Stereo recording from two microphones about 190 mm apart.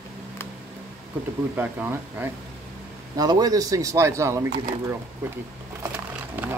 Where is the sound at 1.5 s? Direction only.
10° right (ahead or behind).